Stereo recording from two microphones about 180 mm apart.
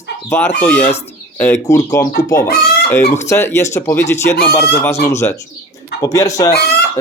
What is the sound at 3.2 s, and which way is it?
Speech, 15° left (ahead or behind).